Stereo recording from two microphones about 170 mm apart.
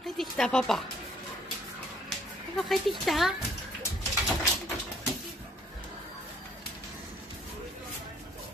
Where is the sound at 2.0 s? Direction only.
Centre (ahead or behind).